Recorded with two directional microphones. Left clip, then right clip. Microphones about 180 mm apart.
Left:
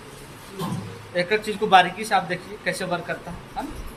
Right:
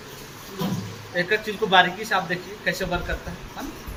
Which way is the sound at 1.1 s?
40° left (ahead or behind).